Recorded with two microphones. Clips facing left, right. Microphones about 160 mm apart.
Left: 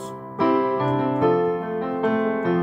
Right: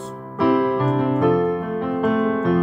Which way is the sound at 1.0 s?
30° left (ahead or behind).